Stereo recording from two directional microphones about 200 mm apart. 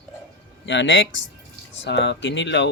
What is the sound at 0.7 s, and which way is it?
Speech, 65° left (ahead or behind).